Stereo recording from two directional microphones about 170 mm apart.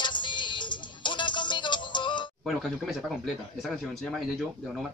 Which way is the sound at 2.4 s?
Centre (ahead or behind).